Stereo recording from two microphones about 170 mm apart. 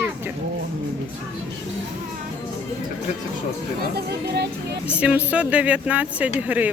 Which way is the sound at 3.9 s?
70° right (ahead or behind).